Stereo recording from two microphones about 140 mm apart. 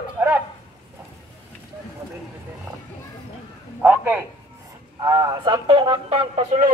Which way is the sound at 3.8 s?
15° right (ahead or behind).